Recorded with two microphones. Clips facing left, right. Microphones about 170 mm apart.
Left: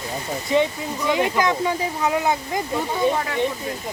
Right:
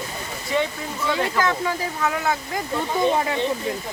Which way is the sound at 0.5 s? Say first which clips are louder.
Left 4 dB; 15° left (ahead or behind).